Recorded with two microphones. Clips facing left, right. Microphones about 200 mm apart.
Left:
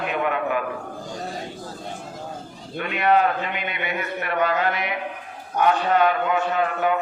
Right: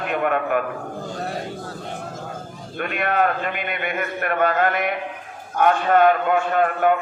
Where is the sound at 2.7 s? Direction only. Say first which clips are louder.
Left 2 dB; 50° right (ahead or behind).